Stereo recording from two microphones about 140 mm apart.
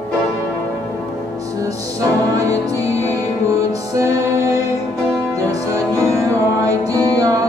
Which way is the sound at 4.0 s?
20° right (ahead or behind).